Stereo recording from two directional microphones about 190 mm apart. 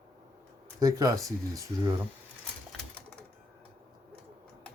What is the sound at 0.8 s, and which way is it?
Speech, 20° right (ahead or behind).